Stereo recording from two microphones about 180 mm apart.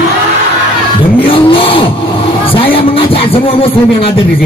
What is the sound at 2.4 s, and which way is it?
Speech, 30° left (ahead or behind).